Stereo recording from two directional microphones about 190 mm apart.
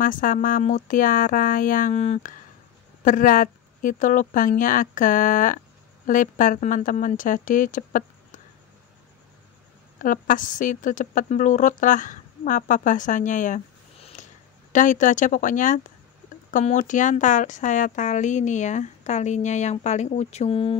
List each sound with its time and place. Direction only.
0.0 s a woman's voice: 45° left (ahead or behind)
10.0 s a woman's voice: 45° left (ahead or behind)